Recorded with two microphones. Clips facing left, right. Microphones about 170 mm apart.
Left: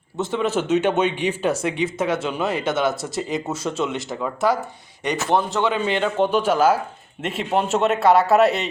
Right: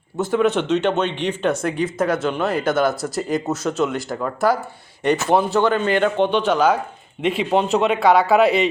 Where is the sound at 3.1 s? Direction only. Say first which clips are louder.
Right 3 dB; centre (ahead or behind).